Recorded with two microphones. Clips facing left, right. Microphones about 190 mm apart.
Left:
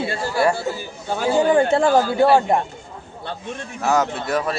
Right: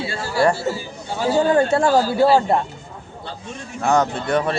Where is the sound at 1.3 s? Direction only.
15° left (ahead or behind).